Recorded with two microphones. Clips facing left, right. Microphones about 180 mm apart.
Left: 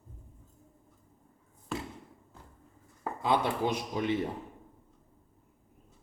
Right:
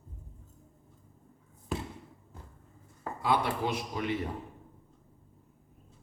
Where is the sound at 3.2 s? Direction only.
20° left (ahead or behind).